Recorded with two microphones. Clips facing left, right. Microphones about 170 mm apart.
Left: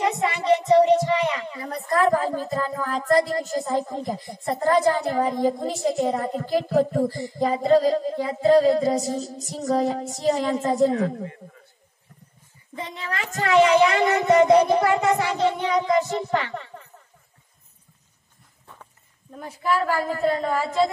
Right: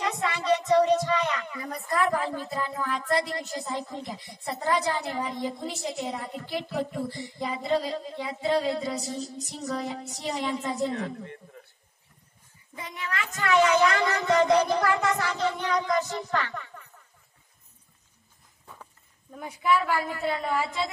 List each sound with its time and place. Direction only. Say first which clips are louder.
0.0 s speech: left 6 dB; 20° left (ahead or behind); by 11.2 s 45° left (ahead or behind)
12.7 s a woman's voice: left 3 dB; 30° left (ahead or behind)
19.3 s a woman's voice: left 2 dB; 5° right (ahead or behind)
19.9 s a woman's voice: left 5 dB; 40° left (ahead or behind)